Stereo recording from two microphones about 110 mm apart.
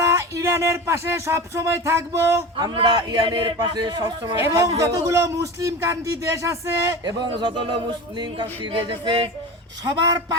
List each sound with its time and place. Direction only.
0.0 s music: 25° right (ahead or behind)
2.6 s a man's voice: 40° right (ahead or behind)
4.4 s speech: 25° right (ahead or behind)
7.0 s speech: 45° right (ahead or behind)